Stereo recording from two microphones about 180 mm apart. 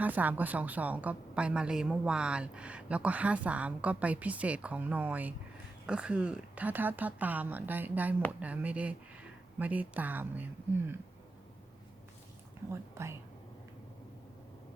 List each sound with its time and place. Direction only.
0.0 s a woman's voice: 10° right (ahead or behind)
12.7 s a woman's voice: 15° right (ahead or behind)